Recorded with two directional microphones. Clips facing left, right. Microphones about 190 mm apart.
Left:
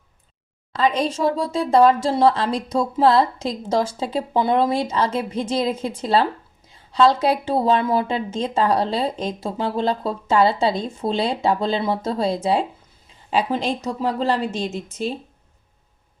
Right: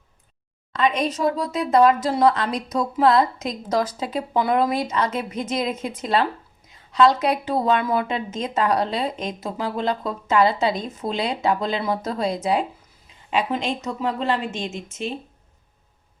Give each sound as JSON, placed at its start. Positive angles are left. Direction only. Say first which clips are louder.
{"t": 0.8, "sound": "a woman's voice", "louder": "left 1 dB", "side_deg": 30}